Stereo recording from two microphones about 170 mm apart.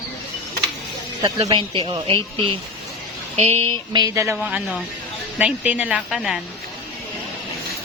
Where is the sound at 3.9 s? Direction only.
20° right (ahead or behind).